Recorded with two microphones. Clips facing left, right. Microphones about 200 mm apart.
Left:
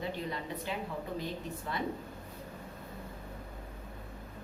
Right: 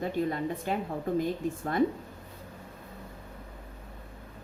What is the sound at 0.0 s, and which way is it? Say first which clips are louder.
Speech: right 8 dB; 50° right (ahead or behind).